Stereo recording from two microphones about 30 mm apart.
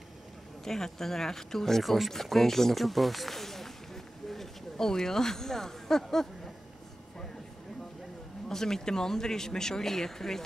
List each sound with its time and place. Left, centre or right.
0.7 s speech: centre
1.8 s speech: centre
8.5 s speech: centre